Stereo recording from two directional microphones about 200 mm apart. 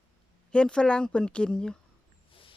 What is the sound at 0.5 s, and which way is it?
Speech, 5° left (ahead or behind).